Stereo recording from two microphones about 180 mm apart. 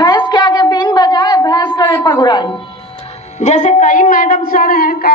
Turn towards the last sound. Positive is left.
turn(degrees=55)  # may be behind; listen again after turning